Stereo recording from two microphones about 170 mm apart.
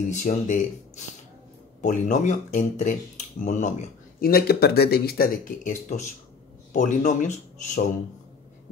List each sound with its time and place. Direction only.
0.1 s speech: 45° left (ahead or behind)
4.2 s speech: 65° left (ahead or behind)